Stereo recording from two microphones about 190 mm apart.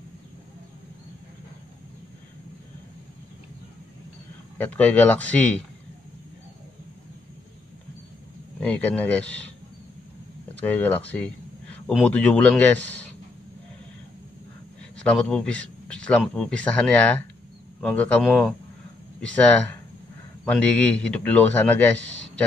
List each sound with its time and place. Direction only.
4.6 s a man's voice: 10° left (ahead or behind)
8.5 s a man's voice: 5° left (ahead or behind)
10.6 s a man's voice: 10° left (ahead or behind)
15.0 s a man's voice: 5° left (ahead or behind)